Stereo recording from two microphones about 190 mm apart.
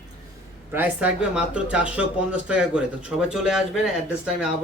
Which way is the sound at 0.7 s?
10° right (ahead or behind).